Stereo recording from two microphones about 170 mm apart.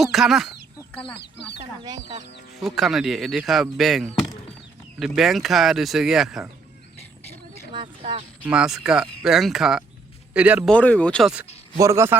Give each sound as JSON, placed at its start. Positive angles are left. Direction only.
{"t": 0.0, "sound": "speech", "side_deg": 0}
{"t": 2.6, "sound": "speech", "side_deg": 0}
{"t": 7.7, "sound": "a sound", "side_deg": -30}
{"t": 8.4, "sound": "speech", "side_deg": -5}
{"t": 10.7, "sound": "speech", "side_deg": 10}
{"t": 11.8, "sound": "a man's voice", "side_deg": -15}